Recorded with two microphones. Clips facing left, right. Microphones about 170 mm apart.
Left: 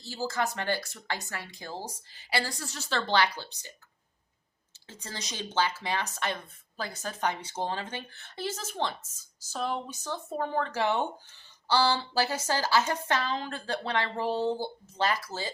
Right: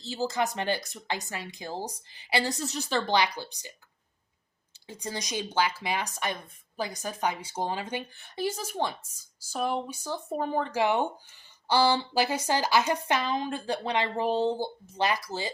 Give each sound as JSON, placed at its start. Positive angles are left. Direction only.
{"t": 0.0, "sound": "speech", "side_deg": -20}
{"t": 4.9, "sound": "speech", "side_deg": -15}